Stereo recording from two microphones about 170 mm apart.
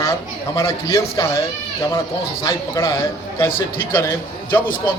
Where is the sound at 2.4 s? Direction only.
20° left (ahead or behind).